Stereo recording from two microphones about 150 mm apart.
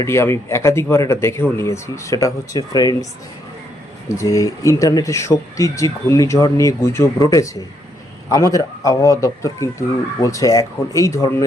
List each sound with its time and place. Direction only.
0.0 s speech: 20° left (ahead or behind)
4.2 s speech: 20° left (ahead or behind)